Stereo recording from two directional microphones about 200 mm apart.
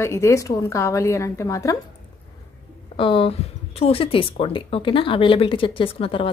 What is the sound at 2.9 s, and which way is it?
Speech, 25° left (ahead or behind).